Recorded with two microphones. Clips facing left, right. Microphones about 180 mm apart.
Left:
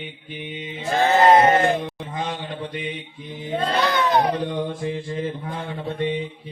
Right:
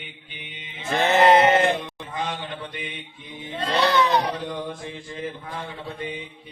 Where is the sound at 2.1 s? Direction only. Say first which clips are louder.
Even; 35° left (ahead or behind).